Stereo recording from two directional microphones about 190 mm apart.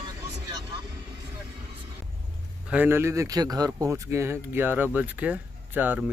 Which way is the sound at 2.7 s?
10° right (ahead or behind).